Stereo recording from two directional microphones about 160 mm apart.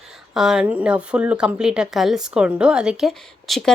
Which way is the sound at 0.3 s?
5° right (ahead or behind).